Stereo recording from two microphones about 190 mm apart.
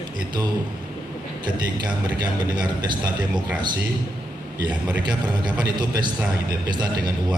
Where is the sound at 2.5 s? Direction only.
25° right (ahead or behind).